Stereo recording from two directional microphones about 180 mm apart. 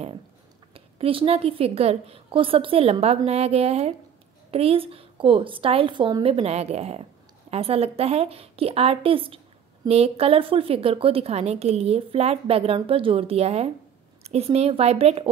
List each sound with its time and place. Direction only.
0.7 s a woman's voice: 30° right (ahead or behind)